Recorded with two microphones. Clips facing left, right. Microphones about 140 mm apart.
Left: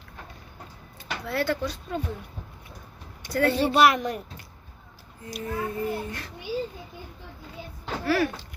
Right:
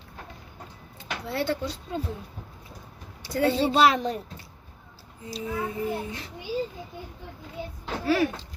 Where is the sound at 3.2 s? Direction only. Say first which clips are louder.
Even; 20° right (ahead or behind).